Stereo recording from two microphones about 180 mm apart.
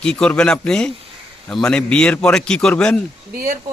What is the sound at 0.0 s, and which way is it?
A man's voice, 5° left (ahead or behind).